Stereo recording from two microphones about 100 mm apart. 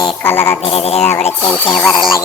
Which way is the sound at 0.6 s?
85° left.